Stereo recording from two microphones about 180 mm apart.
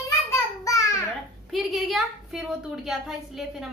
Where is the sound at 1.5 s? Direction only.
Centre (ahead or behind).